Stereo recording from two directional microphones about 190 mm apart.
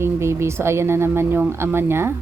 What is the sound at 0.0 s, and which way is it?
Speech, 15° right (ahead or behind).